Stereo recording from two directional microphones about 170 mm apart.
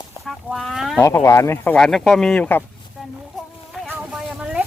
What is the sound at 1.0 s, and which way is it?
Speech, 20° left (ahead or behind).